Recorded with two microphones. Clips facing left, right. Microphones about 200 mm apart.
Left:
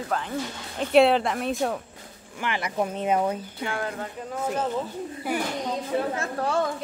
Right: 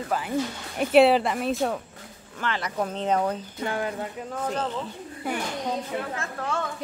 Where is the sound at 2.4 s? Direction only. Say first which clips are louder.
Left 1 dB; 10° left (ahead or behind).